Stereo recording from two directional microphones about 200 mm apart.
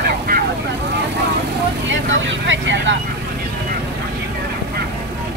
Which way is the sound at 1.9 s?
70° right (ahead or behind).